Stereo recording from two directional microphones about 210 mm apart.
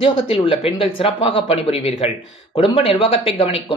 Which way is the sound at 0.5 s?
25° left (ahead or behind).